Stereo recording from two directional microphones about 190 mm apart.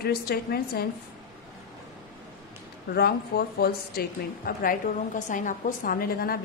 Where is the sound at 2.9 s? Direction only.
55° left (ahead or behind).